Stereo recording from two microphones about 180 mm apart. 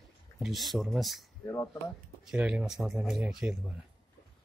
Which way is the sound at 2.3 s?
5° right (ahead or behind).